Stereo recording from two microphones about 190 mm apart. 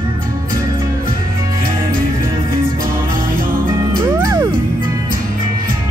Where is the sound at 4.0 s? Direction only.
15° right (ahead or behind).